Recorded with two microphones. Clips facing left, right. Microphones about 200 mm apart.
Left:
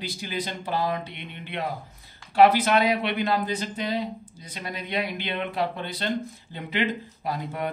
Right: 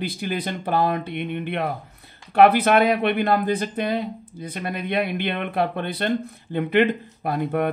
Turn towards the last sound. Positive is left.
turn(degrees=-55)  # may be behind; listen again after turning